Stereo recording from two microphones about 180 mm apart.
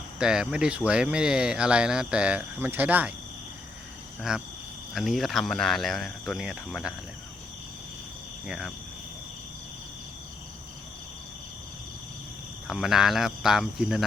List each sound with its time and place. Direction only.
0.2 s speech: 5° right (ahead or behind)
4.2 s speech: centre (ahead or behind)
8.4 s speech: 5° right (ahead or behind)
12.6 s speech: centre (ahead or behind)